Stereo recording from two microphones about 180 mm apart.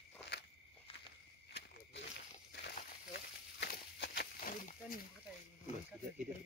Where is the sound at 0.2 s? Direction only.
75° left (ahead or behind).